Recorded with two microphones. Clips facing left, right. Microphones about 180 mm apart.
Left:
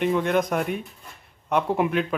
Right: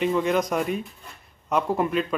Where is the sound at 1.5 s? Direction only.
5° left (ahead or behind).